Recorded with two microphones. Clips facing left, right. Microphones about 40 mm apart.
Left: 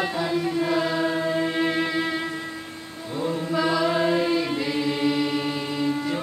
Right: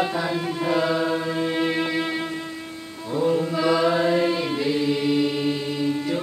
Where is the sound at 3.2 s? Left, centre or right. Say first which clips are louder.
Right 3 dB; centre.